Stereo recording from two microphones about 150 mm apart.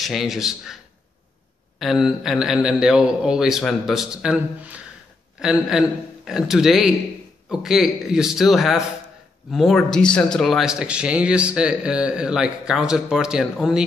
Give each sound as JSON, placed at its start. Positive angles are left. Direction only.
{"t": 0.0, "sound": "speech", "side_deg": 0}
{"t": 1.8, "sound": "speech", "side_deg": 0}